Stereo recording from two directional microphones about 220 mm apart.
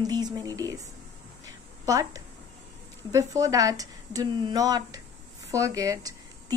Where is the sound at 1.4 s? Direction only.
15° right (ahead or behind).